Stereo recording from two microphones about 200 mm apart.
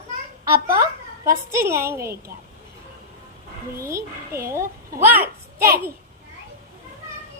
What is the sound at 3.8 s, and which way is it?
A woman's voice, 15° right (ahead or behind).